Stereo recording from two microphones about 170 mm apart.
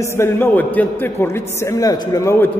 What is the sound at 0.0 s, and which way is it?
A man's voice, 15° left (ahead or behind).